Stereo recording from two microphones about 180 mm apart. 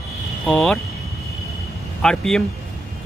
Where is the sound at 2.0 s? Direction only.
5° left (ahead or behind).